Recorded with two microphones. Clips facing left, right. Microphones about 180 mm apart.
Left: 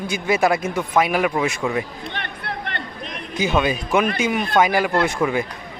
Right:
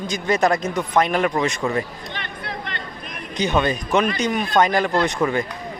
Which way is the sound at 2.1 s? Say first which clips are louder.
Left 1 dB; 60° left (ahead or behind).